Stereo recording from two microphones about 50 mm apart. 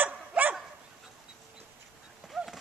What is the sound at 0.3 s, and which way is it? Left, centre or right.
Dog, right.